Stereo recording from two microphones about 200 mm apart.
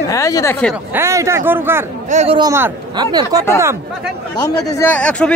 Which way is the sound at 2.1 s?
35° right (ahead or behind).